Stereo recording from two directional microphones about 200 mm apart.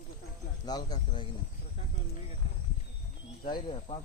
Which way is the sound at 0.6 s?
20° left (ahead or behind).